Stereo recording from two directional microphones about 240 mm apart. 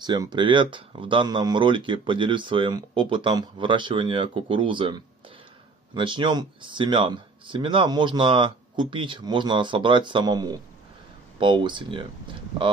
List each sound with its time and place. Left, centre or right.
0.0 s speech: centre